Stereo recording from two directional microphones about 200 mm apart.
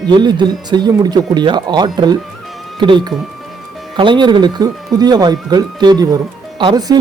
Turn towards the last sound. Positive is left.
turn(degrees=-20)  # may be behind; listen again after turning